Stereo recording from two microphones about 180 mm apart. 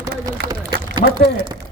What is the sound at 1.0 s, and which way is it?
Speech, 50° left (ahead or behind).